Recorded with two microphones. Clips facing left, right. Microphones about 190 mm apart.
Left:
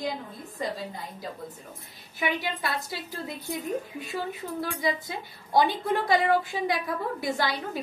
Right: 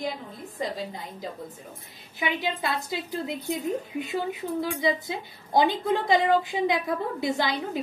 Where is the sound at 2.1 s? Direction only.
20° right (ahead or behind).